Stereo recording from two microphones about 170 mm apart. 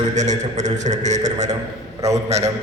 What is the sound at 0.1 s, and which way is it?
A man's voice, 45° right (ahead or behind).